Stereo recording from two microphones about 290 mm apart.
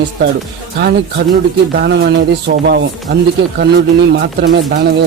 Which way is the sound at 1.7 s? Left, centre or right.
Right.